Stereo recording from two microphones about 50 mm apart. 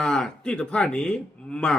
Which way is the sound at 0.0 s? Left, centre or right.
Centre.